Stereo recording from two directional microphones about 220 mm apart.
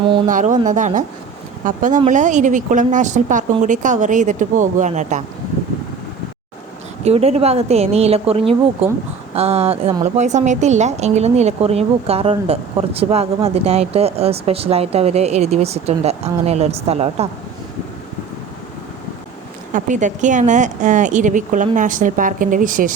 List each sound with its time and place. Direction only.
0.3 s speech: 35° right (ahead or behind)
7.0 s a woman's voice: 30° right (ahead or behind)
19.7 s speech: 35° right (ahead or behind)